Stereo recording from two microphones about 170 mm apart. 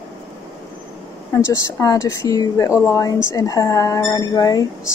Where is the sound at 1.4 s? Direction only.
15° left (ahead or behind).